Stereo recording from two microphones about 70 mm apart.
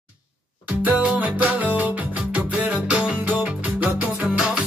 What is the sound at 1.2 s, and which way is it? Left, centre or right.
Music, right.